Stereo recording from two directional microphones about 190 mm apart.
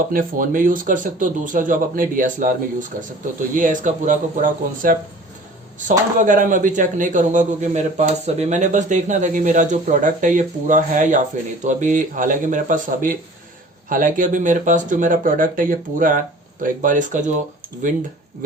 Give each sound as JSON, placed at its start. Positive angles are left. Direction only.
{"t": 0.1, "sound": "speech", "side_deg": -45}
{"t": 6.1, "sound": "a man's voice", "side_deg": -45}